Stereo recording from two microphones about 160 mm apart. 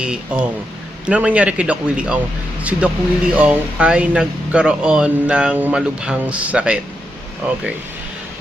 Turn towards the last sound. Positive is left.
turn(degrees=-5)  # may be behind; listen again after turning